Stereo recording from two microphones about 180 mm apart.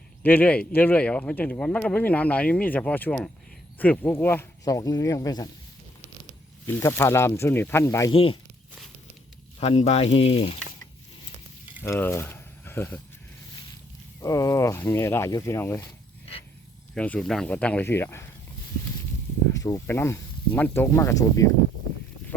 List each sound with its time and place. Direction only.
0.2 s speech: 10° left (ahead or behind)
6.7 s speech: 10° left (ahead or behind)
8.1 s speech: 30° left (ahead or behind)
9.6 s speech: 35° left (ahead or behind)
11.8 s speech: 10° left (ahead or behind)
14.2 s speech: 20° left (ahead or behind)
16.9 s speech: 5° left (ahead or behind)
19.5 s speech: 20° left (ahead or behind)